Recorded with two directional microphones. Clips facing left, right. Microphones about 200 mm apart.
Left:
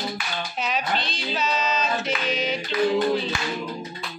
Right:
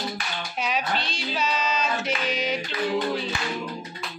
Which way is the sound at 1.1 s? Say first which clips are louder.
Left 1 dB; 10° right (ahead or behind).